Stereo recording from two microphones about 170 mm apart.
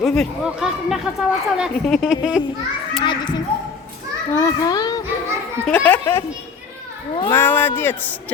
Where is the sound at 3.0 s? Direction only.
25° left (ahead or behind).